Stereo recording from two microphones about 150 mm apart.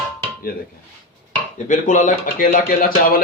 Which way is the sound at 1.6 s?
60° left (ahead or behind).